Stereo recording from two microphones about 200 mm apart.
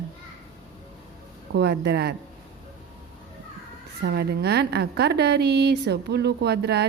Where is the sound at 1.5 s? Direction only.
55° right (ahead or behind).